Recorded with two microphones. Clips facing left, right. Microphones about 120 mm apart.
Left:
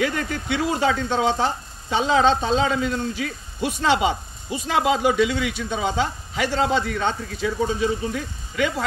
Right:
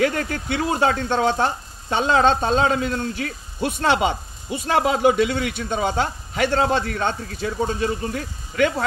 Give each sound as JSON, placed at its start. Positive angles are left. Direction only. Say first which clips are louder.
{"t": 0.0, "sound": "speech", "louder": "right 3 dB", "side_deg": -50}